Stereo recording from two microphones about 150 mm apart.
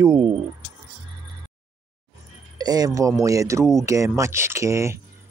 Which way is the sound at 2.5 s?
25° right (ahead or behind).